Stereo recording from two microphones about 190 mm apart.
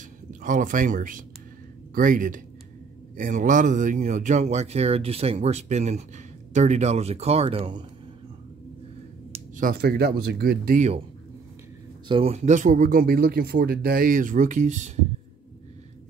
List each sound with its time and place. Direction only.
0.3 s speech: 45° right (ahead or behind); by 7.8 s 30° right (ahead or behind)
9.6 s speech: 50° right (ahead or behind)
12.1 s speech: 30° right (ahead or behind)